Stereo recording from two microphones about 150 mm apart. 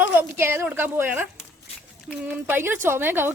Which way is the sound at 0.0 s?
15° right (ahead or behind).